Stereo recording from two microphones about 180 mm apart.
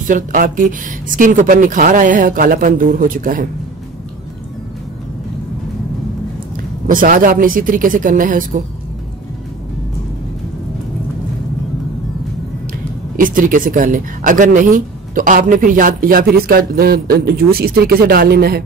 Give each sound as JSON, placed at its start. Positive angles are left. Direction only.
{"t": 0.0, "sound": "speech", "side_deg": -50}
{"t": 6.5, "sound": "speech", "side_deg": -50}
{"t": 13.1, "sound": "speech", "side_deg": -50}